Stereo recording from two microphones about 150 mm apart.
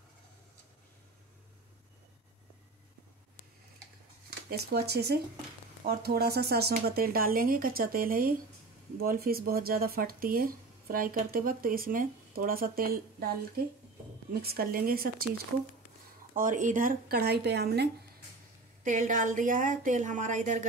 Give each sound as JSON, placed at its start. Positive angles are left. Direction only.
{"t": 4.5, "sound": "speech", "side_deg": -90}
{"t": 14.4, "sound": "speech", "side_deg": -85}
{"t": 16.3, "sound": "speech", "side_deg": -60}
{"t": 18.9, "sound": "a woman's voice", "side_deg": -60}